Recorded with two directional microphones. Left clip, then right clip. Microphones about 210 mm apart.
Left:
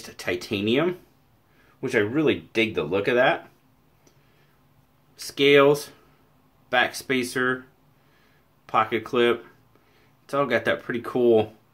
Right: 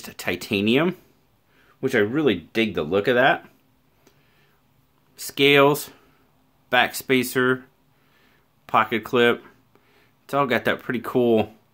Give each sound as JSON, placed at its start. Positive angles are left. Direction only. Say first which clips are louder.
{"t": 0.0, "sound": "speech", "louder": "right 1 dB", "side_deg": -50}
{"t": 5.1, "sound": "speech", "louder": "right 1 dB", "side_deg": -50}
{"t": 8.6, "sound": "speech", "louder": "right 2 dB", "side_deg": -50}